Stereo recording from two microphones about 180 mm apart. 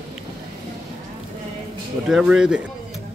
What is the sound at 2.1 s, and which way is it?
Speech, 5° right (ahead or behind).